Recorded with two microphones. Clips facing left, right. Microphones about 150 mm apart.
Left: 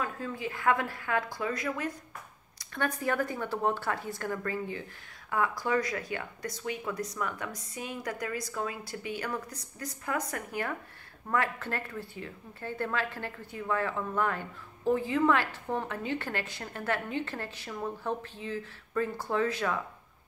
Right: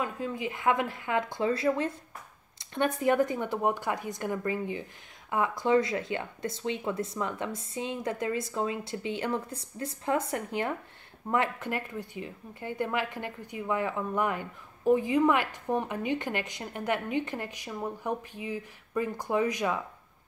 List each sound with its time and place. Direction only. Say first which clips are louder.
0.0 s speech: right 2 dB; 20° right (ahead or behind)